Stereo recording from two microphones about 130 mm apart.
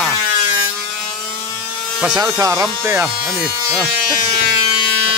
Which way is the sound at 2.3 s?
25° right (ahead or behind).